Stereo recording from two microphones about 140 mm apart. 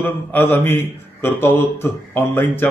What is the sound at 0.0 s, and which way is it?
Speech, 15° left (ahead or behind).